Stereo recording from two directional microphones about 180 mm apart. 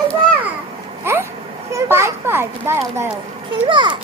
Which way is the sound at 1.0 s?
15° right (ahead or behind).